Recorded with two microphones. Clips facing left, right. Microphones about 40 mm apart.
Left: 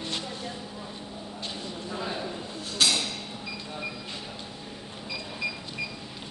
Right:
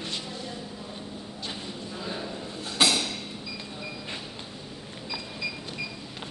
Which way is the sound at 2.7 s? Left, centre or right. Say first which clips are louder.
Right 2 dB; centre.